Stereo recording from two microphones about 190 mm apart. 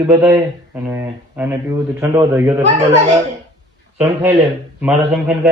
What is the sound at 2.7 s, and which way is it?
Speech, 35° right (ahead or behind).